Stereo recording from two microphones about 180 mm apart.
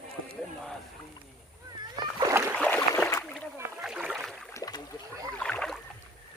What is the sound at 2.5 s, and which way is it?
Boat, 5° left (ahead or behind).